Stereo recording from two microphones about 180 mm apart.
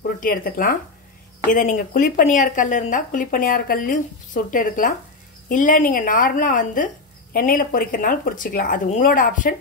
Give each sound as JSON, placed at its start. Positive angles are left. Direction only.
{"t": 0.2, "sound": "speech", "side_deg": 50}